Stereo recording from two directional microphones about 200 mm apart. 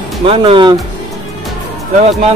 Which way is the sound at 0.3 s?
25° right (ahead or behind).